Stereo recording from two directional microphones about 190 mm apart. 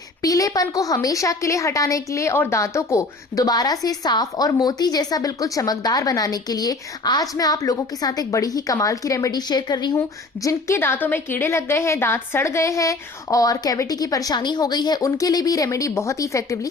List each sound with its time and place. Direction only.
0.2 s a woman's voice: 20° left (ahead or behind)